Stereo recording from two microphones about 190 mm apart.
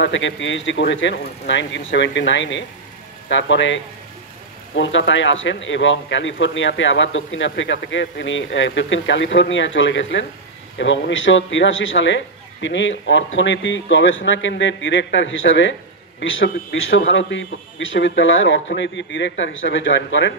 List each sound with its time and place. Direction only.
0.0 s a man's voice: 75° left (ahead or behind)